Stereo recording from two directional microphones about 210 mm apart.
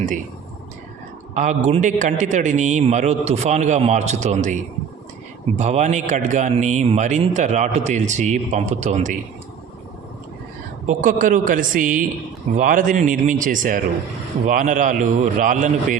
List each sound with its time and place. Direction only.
1.3 s speech: 35° right (ahead or behind)
10.8 s speech: 40° right (ahead or behind)